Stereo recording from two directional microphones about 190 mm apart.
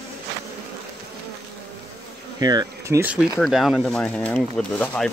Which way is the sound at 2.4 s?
20° right (ahead or behind).